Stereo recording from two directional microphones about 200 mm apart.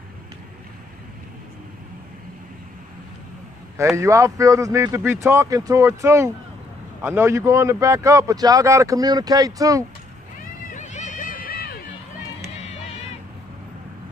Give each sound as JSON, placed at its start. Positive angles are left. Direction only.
{"t": 3.7, "sound": "speech", "side_deg": -15}
{"t": 10.7, "sound": "a sound", "side_deg": 35}
{"t": 12.5, "sound": "music", "side_deg": 30}